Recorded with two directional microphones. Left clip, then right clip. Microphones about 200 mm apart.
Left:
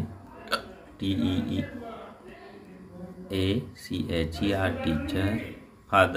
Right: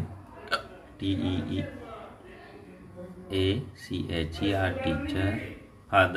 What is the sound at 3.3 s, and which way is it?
Speech, 15° left (ahead or behind).